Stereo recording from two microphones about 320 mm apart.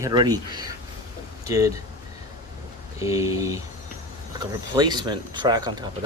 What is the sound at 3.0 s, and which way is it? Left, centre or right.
Speech, centre.